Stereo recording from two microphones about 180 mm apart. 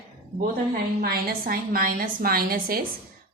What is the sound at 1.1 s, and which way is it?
A woman's voice, 55° right (ahead or behind).